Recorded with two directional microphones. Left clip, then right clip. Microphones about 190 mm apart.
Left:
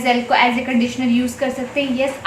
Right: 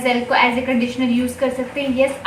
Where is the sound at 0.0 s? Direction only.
30° left (ahead or behind).